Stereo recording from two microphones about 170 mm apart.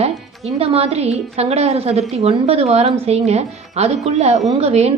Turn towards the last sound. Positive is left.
turn(degrees=-40)  # may be behind; listen again after turning